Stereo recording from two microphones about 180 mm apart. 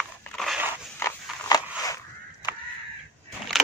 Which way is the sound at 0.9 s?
15° left (ahead or behind).